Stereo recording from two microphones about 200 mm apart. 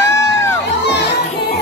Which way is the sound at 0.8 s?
55° left (ahead or behind).